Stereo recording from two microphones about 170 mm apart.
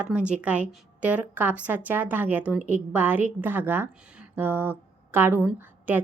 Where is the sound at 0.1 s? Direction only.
5° right (ahead or behind).